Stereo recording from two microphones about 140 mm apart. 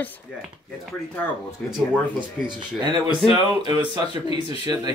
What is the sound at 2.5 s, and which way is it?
Speech, 30° right (ahead or behind).